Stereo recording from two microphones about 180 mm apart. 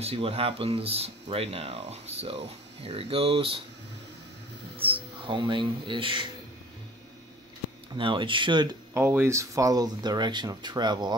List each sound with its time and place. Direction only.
0.0 s speech: 35° right (ahead or behind)
4.8 s speech: 30° right (ahead or behind)
7.9 s speech: 25° right (ahead or behind)
8.9 s speech: 10° right (ahead or behind)